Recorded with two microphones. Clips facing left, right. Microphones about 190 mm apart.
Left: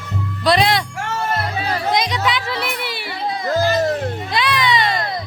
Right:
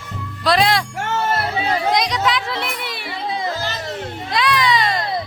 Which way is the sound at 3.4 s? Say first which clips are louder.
Left 8 dB; 50° left (ahead or behind).